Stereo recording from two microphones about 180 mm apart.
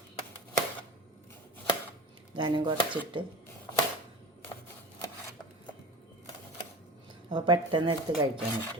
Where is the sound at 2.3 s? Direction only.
25° right (ahead or behind).